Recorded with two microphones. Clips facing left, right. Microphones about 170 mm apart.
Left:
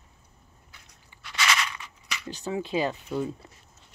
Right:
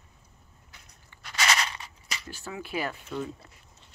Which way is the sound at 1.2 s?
40° right (ahead or behind).